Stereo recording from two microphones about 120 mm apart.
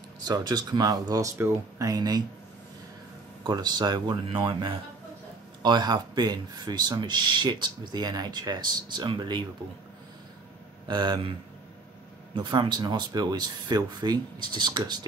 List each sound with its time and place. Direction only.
0.2 s speech: 35° right (ahead or behind)
3.4 s speech: 35° right (ahead or behind)
10.9 s speech: 40° right (ahead or behind)
12.4 s speech: 40° right (ahead or behind)